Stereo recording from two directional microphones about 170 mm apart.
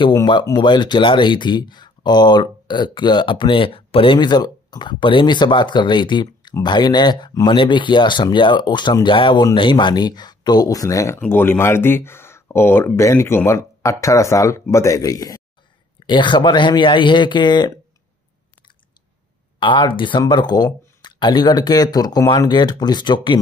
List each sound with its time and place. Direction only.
0.0 s speech: 25° left (ahead or behind)
19.6 s speech: 30° left (ahead or behind)